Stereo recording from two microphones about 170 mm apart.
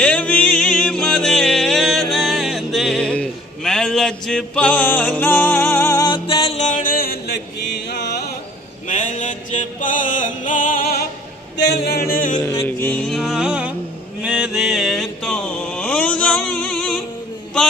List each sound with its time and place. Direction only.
0.0 s music: 5° left (ahead or behind); by 8.2 s 80° left
8.8 s mantra: 45° left (ahead or behind)
11.5 s speech: 85° left
12.1 s music: 55° left (ahead or behind)
12.4 s music: 15° left (ahead or behind); by 13.7 s 5° right (ahead or behind)
14.2 s mantra: 5° right (ahead or behind)